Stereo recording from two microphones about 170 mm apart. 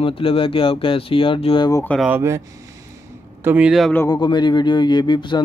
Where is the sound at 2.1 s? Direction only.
15° right (ahead or behind).